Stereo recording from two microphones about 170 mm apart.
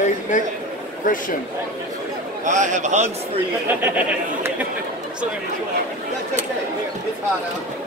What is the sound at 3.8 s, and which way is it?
Speech, 10° right (ahead or behind).